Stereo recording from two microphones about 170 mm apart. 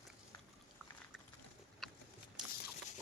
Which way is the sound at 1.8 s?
Centre (ahead or behind).